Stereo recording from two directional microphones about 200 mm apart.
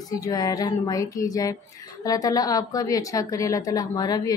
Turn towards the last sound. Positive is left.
turn(degrees=20)  # may be behind; listen again after turning